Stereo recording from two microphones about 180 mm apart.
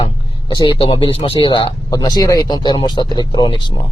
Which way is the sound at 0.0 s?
30° left (ahead or behind).